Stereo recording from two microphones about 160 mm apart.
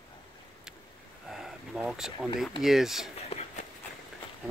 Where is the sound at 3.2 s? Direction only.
40° left (ahead or behind).